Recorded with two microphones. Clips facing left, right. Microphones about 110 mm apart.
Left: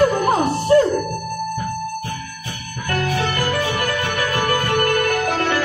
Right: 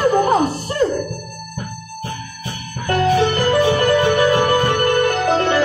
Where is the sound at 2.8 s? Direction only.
25° right (ahead or behind).